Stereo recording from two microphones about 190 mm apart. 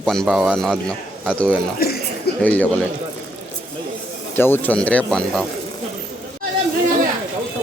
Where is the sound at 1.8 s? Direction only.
55° left (ahead or behind).